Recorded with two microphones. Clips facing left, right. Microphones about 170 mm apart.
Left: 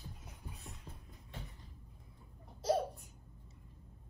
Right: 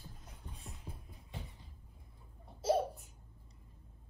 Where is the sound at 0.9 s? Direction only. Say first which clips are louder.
Right 3 dB; 10° right (ahead or behind).